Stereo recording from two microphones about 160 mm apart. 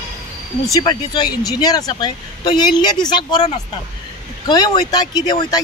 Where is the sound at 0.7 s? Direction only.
25° left (ahead or behind).